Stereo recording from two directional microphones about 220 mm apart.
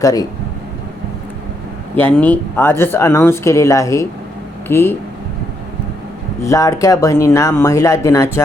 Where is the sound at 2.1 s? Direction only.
10° left (ahead or behind).